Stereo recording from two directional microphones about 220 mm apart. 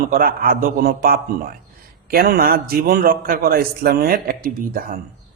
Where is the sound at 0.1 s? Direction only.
40° right (ahead or behind).